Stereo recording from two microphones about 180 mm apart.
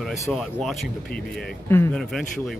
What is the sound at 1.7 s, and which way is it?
Speech, 15° left (ahead or behind).